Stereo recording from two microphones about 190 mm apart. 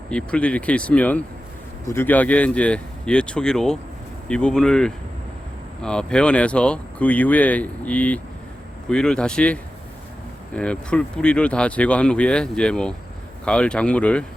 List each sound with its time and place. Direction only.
0.1 s speech: 5° left (ahead or behind)